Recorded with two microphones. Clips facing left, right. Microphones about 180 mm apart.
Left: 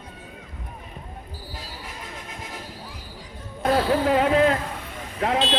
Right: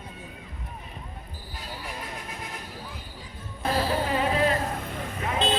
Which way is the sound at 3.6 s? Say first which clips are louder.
Left 6 dB; 75° left (ahead or behind).